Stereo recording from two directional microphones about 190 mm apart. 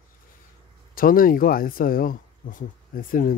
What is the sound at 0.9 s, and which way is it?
Speech, 50° left (ahead or behind).